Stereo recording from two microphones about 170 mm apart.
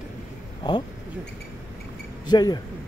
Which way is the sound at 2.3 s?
25° left (ahead or behind).